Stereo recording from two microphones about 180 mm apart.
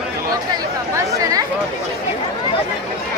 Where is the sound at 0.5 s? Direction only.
20° right (ahead or behind).